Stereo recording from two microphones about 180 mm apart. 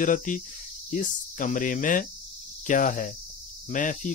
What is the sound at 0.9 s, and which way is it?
Speech, 45° left (ahead or behind).